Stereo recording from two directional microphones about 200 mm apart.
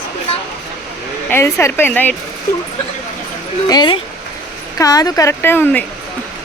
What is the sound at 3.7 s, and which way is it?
Speech, 20° left (ahead or behind).